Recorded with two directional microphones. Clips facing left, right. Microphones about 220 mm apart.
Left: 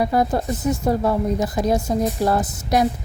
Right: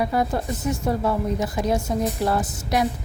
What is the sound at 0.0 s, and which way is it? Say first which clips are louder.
Speech: left 3 dB; 40° left (ahead or behind).